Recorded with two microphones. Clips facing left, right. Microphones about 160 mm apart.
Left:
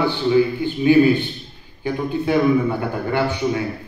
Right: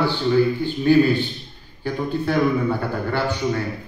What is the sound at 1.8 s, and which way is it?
A man's voice, 15° left (ahead or behind).